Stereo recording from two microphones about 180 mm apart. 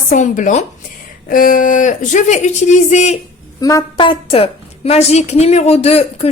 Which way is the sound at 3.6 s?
20° left (ahead or behind).